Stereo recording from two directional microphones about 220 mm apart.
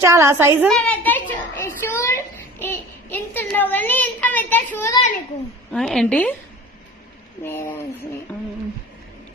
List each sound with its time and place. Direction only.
0.0 s a woman's voice: 10° right (ahead or behind)
0.7 s a sound: 5° left (ahead or behind)
5.7 s a woman's voice: centre (ahead or behind)
7.4 s speech: 10° left (ahead or behind)